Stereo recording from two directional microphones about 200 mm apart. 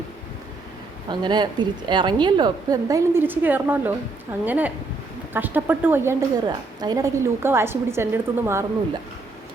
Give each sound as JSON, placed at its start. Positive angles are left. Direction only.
{"t": 1.1, "sound": "a woman's voice", "side_deg": -20}